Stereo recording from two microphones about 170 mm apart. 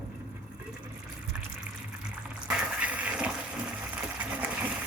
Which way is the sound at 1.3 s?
10° right (ahead or behind).